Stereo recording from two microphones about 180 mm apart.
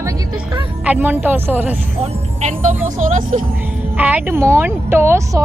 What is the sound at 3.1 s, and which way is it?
Speech, 45° right (ahead or behind).